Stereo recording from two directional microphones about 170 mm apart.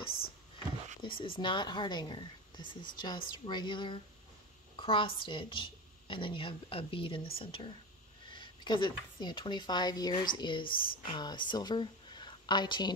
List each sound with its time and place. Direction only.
1.0 s speech: 30° left (ahead or behind)